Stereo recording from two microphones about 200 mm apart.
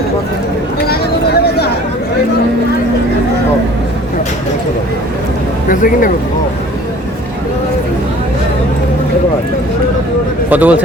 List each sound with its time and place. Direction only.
0.9 s a sound: 55° left (ahead or behind)
5.6 s speech: 45° left (ahead or behind)
10.5 s a man's voice: 10° right (ahead or behind)